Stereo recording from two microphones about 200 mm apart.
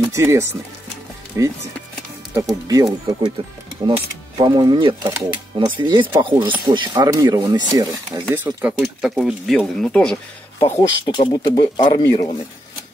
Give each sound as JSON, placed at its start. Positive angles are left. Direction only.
{"t": 0.0, "sound": "speech", "side_deg": -15}
{"t": 4.4, "sound": "speech", "side_deg": -20}
{"t": 8.7, "sound": "speech", "side_deg": 0}
{"t": 10.6, "sound": "speech", "side_deg": 15}